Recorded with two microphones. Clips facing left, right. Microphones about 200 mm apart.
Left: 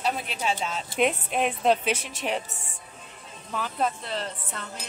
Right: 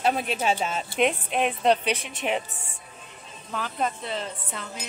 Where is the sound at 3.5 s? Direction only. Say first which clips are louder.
Left 1 dB; centre (ahead or behind).